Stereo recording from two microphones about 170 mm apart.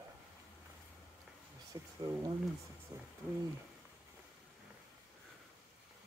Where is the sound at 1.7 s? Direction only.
25° right (ahead or behind).